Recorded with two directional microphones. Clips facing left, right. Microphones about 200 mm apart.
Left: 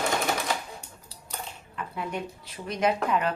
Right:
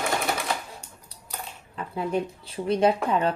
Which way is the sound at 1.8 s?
30° right (ahead or behind).